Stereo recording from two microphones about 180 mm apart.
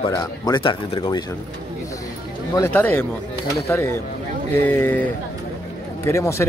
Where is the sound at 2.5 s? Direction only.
15° left (ahead or behind).